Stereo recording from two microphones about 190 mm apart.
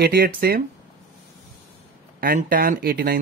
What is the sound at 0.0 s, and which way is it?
Speech, 55° right (ahead or behind).